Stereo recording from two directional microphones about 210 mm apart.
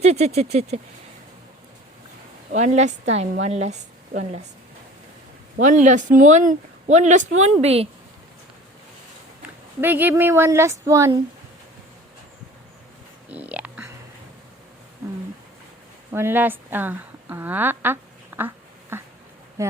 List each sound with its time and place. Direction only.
0.0 s speech: 30° right (ahead or behind)
2.5 s speech: 35° right (ahead or behind)
5.5 s speech: 35° right (ahead or behind)
9.8 s speech: 10° right (ahead or behind)
13.2 s a sound: 5° right (ahead or behind)
16.1 s a woman's voice: 10° right (ahead or behind)